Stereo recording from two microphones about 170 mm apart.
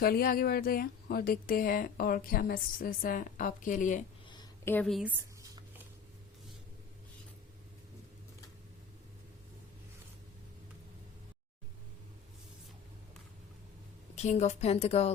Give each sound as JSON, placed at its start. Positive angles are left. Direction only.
{"t": 0.0, "sound": "a woman's voice", "side_deg": 60}
{"t": 4.6, "sound": "a woman's voice", "side_deg": 10}
{"t": 4.9, "sound": "speech", "side_deg": 0}
{"t": 5.4, "sound": "writing", "side_deg": -20}
{"t": 14.2, "sound": "a woman's voice", "side_deg": 40}